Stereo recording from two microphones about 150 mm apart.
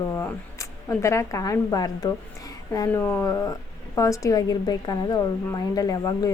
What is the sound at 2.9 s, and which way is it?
Speech, 15° left (ahead or behind).